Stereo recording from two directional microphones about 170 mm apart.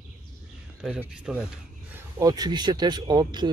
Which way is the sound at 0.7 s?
Centre (ahead or behind).